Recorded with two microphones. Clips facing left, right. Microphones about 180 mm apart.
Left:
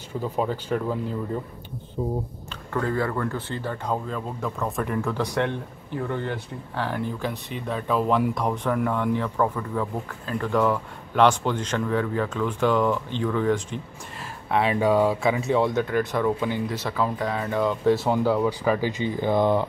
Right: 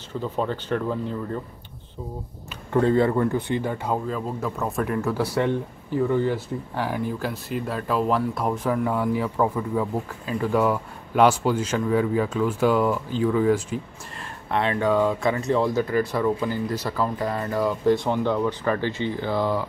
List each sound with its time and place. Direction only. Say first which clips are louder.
0.1 s speech: even; 10° left (ahead or behind)
2.7 s speech: right 6 dB; 25° right (ahead or behind); by 13.7 s 5° right (ahead or behind)
14.5 s speech: left 1 dB; 5° left (ahead or behind)